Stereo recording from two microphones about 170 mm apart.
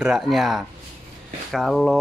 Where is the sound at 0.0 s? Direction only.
5° right (ahead or behind).